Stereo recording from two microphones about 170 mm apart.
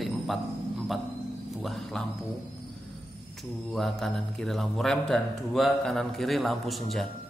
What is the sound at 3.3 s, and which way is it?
Speech, centre (ahead or behind).